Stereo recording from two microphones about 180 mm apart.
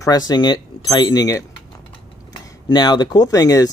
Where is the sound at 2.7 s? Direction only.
25° left (ahead or behind).